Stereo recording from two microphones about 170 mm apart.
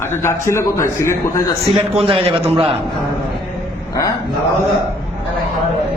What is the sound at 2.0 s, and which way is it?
Speech, 35° right (ahead or behind).